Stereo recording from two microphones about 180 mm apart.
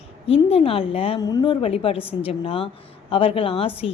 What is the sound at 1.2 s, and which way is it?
A woman's voice, 20° left (ahead or behind).